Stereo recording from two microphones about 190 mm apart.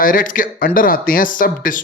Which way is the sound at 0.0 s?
45° left (ahead or behind).